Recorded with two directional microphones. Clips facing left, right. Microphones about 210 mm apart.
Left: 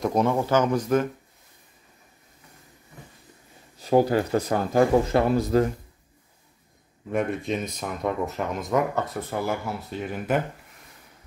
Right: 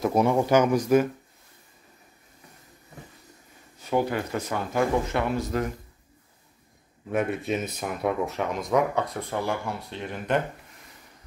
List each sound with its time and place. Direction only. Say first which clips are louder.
0.0 s speech: right 1 dB; 10° right (ahead or behind)
3.8 s speech: left 5 dB; 35° left (ahead or behind)
7.1 s speech: even; 5° right (ahead or behind)